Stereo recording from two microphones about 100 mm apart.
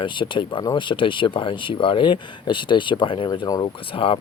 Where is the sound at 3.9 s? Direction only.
65° left (ahead or behind).